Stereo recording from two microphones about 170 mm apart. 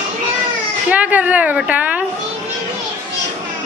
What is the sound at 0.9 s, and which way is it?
A woman's voice, 10° right (ahead or behind).